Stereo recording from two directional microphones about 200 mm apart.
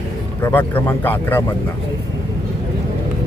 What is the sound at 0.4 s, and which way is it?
Speech, 10° left (ahead or behind).